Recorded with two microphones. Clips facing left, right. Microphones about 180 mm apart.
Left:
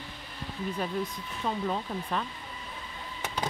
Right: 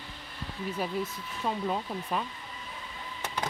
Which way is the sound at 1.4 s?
10° right (ahead or behind).